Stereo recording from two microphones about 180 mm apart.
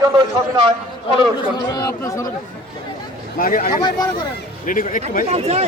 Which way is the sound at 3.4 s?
50° left (ahead or behind).